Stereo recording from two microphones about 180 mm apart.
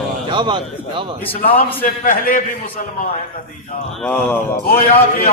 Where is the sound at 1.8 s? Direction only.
50° left (ahead or behind).